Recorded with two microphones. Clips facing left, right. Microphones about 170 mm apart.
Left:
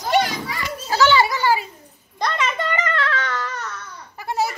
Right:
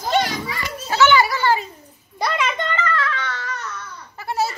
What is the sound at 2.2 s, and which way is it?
Speech, centre (ahead or behind).